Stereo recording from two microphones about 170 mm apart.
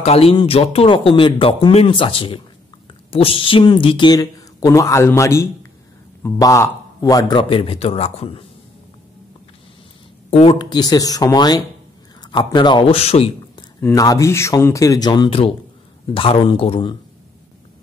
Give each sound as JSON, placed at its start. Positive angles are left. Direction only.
{"t": 0.0, "sound": "speech", "side_deg": 35}
{"t": 10.3, "sound": "speech", "side_deg": 35}
{"t": 13.7, "sound": "speech", "side_deg": 15}